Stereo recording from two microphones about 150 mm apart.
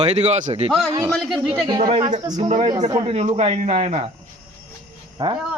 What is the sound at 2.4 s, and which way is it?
A man's voice, 45° right (ahead or behind).